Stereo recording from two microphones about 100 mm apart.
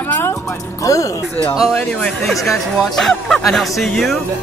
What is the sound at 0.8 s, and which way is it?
Speech, 30° left (ahead or behind).